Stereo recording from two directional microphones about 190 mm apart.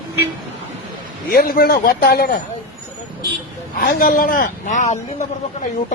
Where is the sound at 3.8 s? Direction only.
50° left (ahead or behind).